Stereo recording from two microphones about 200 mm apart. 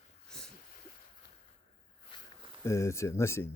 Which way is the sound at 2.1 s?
25° left (ahead or behind).